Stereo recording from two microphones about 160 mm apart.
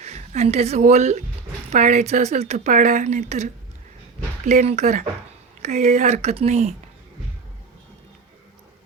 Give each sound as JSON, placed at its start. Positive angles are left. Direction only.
{"t": 0.0, "sound": "speech", "side_deg": -45}